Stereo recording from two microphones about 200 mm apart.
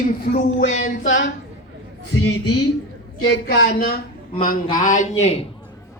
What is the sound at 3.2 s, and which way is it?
Speech, 55° left (ahead or behind).